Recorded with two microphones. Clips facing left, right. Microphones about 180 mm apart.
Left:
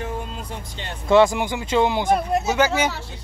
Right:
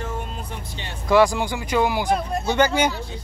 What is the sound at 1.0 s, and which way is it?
Speech, 25° left (ahead or behind).